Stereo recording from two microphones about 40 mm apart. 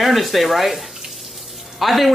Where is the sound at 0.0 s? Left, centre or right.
Centre.